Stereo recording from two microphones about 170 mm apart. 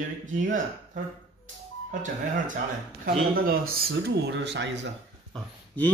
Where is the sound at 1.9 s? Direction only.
50° right (ahead or behind).